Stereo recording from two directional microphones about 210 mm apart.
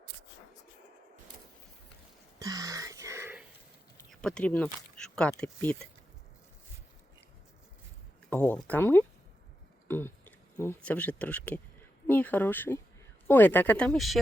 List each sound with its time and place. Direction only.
2.4 s a sound: 15° right (ahead or behind)
4.1 s speech: 5° left (ahead or behind)
8.3 s speech: 5° left (ahead or behind)